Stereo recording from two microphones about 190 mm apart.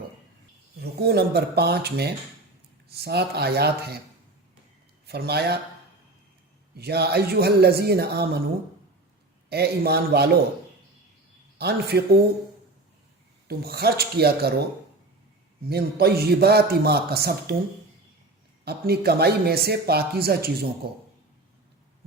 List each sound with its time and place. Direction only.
0.8 s speech: 55° right (ahead or behind)
5.0 s speech: 55° right (ahead or behind)
6.7 s speech: 60° right (ahead or behind)
9.5 s speech: 55° right (ahead or behind)
11.5 s speech: 60° right (ahead or behind)
13.5 s speech: 55° right (ahead or behind)
15.7 s speech: 55° right (ahead or behind)
18.6 s speech: 55° right (ahead or behind)